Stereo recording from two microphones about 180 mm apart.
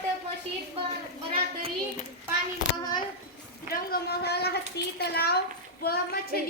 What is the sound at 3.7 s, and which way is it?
A child's voice, 55° left (ahead or behind).